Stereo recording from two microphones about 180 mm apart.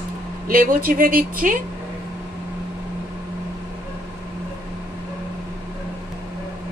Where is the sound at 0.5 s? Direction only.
55° right (ahead or behind).